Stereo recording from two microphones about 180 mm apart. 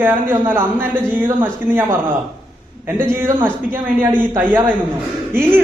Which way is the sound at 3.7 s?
10° right (ahead or behind).